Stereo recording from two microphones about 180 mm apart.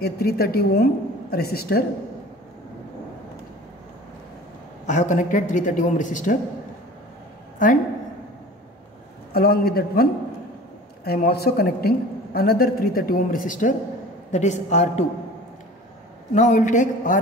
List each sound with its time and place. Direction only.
0.0 s a woman's voice: 60° left (ahead or behind)
4.8 s a man's voice: 40° left (ahead or behind)
7.5 s a man's voice: 45° left (ahead or behind)
9.3 s a woman's voice: 60° left (ahead or behind)
11.1 s a woman's voice: 60° left (ahead or behind); by 15.0 s 40° left (ahead or behind)
16.3 s a man's voice: 45° left (ahead or behind)